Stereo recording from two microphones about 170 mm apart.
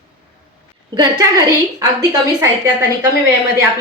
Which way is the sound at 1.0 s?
20° right (ahead or behind).